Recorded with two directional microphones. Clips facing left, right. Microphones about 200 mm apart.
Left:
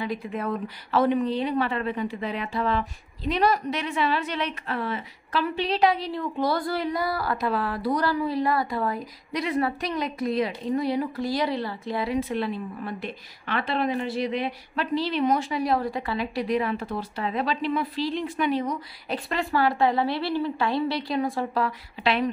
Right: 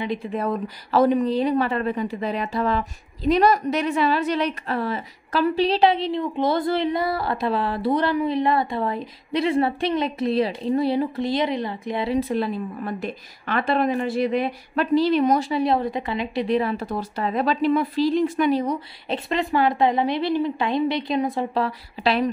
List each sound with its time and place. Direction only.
0.9 s a woman's voice: 40° right (ahead or behind); by 12.2 s 20° right (ahead or behind)
12.2 s a woman's voice: 40° right (ahead or behind)
15.6 s a woman's voice: 25° right (ahead or behind)
19.0 s a woman's voice: 25° right (ahead or behind)
21.6 s a woman's voice: 35° right (ahead or behind)